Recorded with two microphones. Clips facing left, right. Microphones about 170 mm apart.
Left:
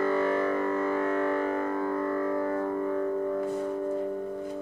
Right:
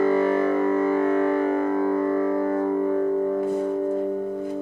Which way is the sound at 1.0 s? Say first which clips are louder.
Right 6 dB; 15° right (ahead or behind).